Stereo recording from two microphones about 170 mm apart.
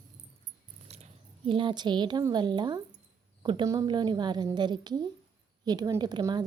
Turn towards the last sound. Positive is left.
turn(degrees=-25)  # may be behind; listen again after turning